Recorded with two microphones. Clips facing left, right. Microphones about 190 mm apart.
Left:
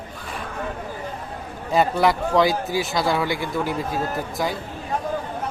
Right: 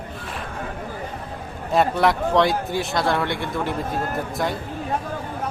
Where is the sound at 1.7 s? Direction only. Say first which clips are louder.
Even; centre (ahead or behind).